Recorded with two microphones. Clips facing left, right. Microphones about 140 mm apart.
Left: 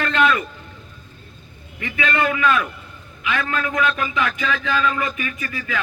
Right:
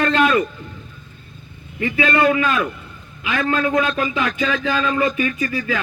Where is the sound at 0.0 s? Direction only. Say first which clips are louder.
Right 3 dB; 30° right (ahead or behind).